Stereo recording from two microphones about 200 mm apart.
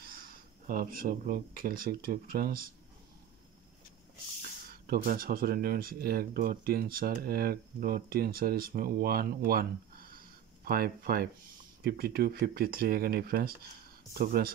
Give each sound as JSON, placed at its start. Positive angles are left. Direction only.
{"t": 0.0, "sound": "speech", "side_deg": -45}
{"t": 4.8, "sound": "speech", "side_deg": -50}